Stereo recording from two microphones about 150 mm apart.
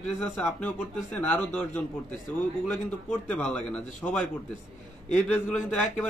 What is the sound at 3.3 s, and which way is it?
Speech, 10° left (ahead or behind).